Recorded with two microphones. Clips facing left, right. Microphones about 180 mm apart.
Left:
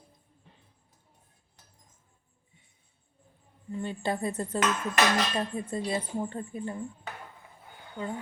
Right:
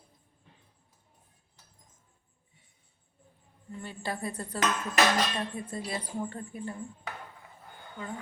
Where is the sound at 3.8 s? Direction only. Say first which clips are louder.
Left 5 dB; 25° left (ahead or behind).